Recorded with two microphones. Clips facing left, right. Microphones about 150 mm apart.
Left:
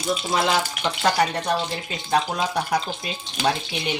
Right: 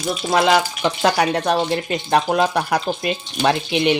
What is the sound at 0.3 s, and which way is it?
Speech, 85° right.